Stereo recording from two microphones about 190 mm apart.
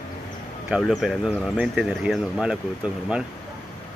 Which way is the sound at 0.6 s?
5° right (ahead or behind).